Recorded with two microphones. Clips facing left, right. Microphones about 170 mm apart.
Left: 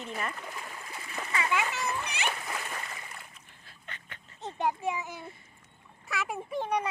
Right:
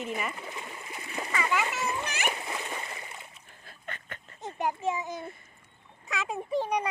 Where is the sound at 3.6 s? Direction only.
50° right (ahead or behind).